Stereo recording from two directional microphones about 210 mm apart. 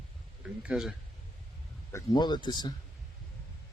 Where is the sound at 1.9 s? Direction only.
20° left (ahead or behind).